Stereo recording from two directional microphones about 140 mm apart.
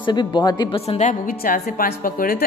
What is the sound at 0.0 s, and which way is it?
Speech, 30° left (ahead or behind).